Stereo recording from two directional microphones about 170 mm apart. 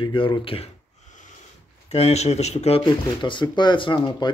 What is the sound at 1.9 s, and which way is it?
Speech, 40° left (ahead or behind).